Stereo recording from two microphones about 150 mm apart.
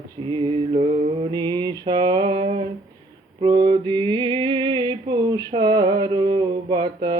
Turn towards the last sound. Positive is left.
turn(degrees=-30)  # may be behind; listen again after turning